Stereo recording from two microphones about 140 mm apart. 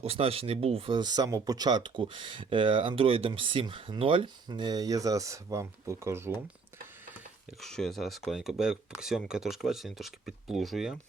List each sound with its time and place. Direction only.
0.0 s speech: 45° right (ahead or behind); by 6.4 s 20° right (ahead or behind)
7.6 s speech: 5° left (ahead or behind)